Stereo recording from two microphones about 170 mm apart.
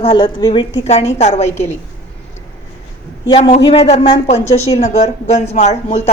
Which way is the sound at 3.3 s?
35° left (ahead or behind).